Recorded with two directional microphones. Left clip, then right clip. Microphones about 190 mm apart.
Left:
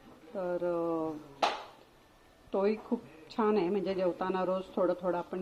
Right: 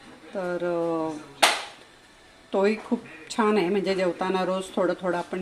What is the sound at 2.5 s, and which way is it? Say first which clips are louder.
A woman's voice: right 7 dB; 15° right (ahead or behind).